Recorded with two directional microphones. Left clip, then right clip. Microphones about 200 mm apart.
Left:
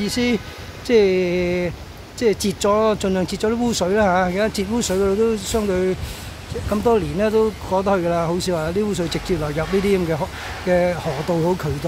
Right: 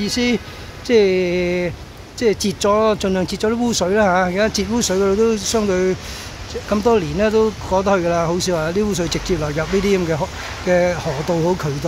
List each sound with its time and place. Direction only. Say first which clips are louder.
0.0 s speech: right 2 dB; 5° left (ahead or behind)